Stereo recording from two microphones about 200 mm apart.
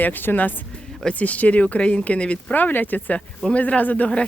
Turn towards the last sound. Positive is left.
turn(degrees=5)  # may be behind; listen again after turning